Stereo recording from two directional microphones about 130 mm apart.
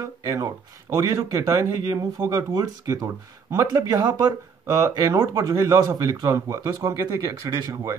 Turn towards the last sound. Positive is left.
turn(degrees=-25)  # may be behind; listen again after turning